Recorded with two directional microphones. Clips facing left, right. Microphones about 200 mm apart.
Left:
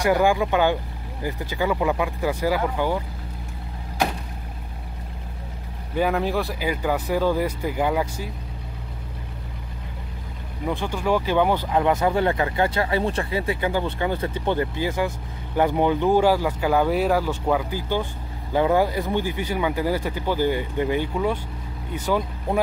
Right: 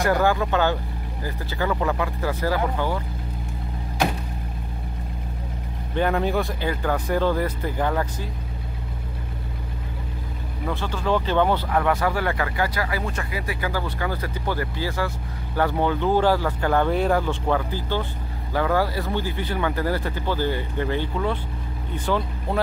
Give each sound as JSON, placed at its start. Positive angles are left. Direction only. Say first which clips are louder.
{"t": 0.0, "sound": "speech", "louder": "left 1 dB", "side_deg": 15}
{"t": 5.9, "sound": "speech", "louder": "even", "side_deg": 5}
{"t": 10.7, "sound": "speech", "louder": "left 1 dB", "side_deg": 15}